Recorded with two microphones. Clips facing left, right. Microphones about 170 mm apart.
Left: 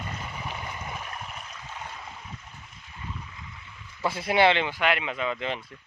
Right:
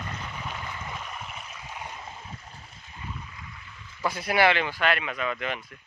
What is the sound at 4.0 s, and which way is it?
Speech, 25° left (ahead or behind).